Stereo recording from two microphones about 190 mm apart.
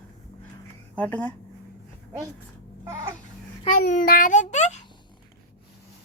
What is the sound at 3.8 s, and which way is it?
A child's voice, 50° left (ahead or behind).